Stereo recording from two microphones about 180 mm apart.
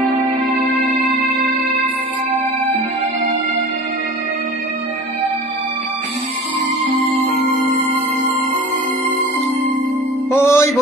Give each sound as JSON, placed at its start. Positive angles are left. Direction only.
{"t": 10.3, "sound": "music", "side_deg": 15}